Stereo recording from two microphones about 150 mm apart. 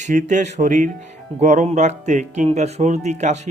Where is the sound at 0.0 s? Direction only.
55° right (ahead or behind).